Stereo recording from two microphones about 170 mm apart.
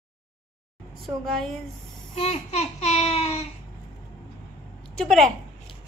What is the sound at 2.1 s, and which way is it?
Babbling, 40° left (ahead or behind).